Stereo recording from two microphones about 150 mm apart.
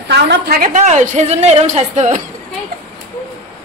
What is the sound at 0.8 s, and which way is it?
Speech, 50° right (ahead or behind).